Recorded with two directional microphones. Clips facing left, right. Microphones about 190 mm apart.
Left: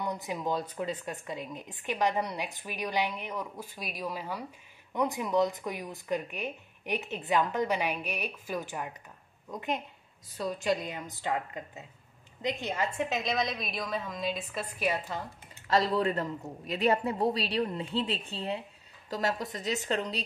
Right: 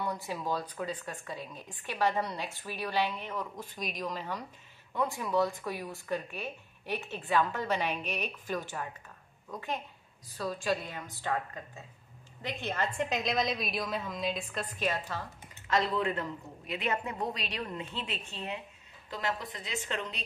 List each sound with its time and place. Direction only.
0.0 s a woman's voice: 20° left (ahead or behind)
15.7 s a man's voice: 35° left (ahead or behind)